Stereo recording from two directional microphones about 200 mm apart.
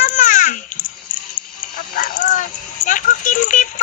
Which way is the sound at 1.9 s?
45° left (ahead or behind).